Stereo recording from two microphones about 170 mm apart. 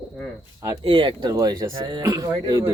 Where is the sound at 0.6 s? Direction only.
30° right (ahead or behind).